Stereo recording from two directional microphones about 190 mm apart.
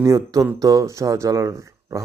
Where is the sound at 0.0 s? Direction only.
15° right (ahead or behind).